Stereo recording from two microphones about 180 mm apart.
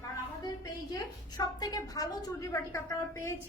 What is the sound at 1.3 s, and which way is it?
A woman's voice, 20° left (ahead or behind).